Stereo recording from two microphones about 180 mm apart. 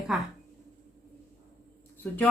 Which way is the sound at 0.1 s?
5° right (ahead or behind).